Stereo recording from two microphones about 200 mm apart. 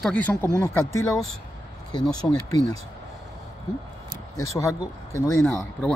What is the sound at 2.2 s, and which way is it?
Speech, 15° left (ahead or behind).